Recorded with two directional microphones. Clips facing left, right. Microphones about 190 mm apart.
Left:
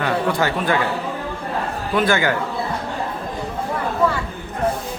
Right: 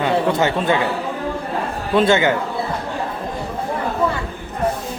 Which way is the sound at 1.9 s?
25° right (ahead or behind).